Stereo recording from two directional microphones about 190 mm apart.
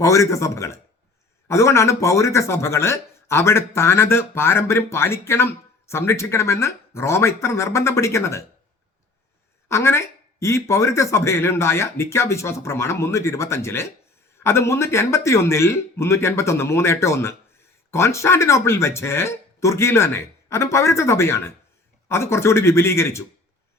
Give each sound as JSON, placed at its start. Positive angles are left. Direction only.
{"t": 0.0, "sound": "speech", "side_deg": 15}
{"t": 9.6, "sound": "speech", "side_deg": 15}